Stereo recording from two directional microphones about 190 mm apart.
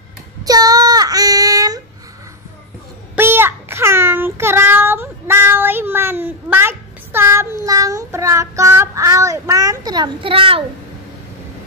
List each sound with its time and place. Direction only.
0.4 s child singing: 20° right (ahead or behind)
3.2 s child singing: 10° right (ahead or behind); by 10.6 s 30° right (ahead or behind)